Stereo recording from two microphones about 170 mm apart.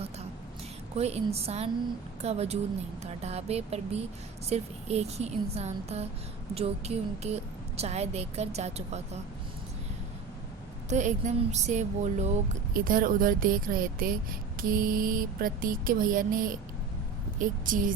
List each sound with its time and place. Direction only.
0.9 s speech: 40° right (ahead or behind)
10.8 s speech: 45° right (ahead or behind)
12.7 s mantra: 55° right (ahead or behind)
17.4 s speech: 50° right (ahead or behind)